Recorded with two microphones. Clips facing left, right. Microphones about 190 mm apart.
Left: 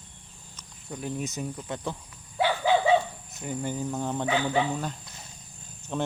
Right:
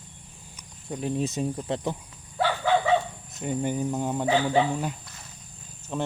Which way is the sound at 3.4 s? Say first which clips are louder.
Right 4 dB; 20° right (ahead or behind).